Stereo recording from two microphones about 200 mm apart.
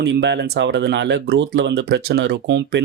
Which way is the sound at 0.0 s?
60° right (ahead or behind).